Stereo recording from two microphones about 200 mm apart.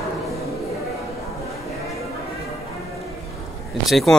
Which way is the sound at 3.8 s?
Centre (ahead or behind).